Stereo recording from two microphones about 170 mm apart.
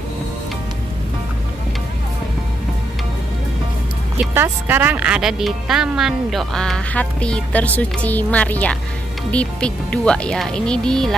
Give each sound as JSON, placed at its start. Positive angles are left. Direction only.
{"t": 4.3, "sound": "speech", "side_deg": -15}